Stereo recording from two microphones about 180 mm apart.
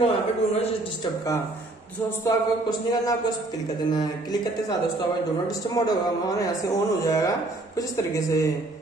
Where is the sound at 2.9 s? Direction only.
20° left (ahead or behind).